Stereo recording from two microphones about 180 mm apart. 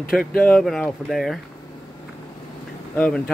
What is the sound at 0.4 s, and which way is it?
Speech, 5° left (ahead or behind).